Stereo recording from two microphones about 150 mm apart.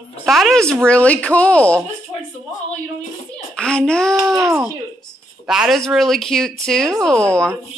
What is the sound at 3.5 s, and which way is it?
Speech, 5° left (ahead or behind).